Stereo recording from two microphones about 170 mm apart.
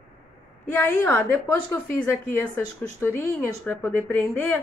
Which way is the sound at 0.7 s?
15° left (ahead or behind).